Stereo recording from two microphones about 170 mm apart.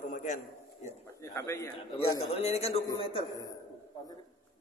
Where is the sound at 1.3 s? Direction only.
15° left (ahead or behind).